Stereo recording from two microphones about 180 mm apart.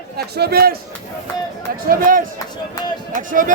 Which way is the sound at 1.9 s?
50° right (ahead or behind).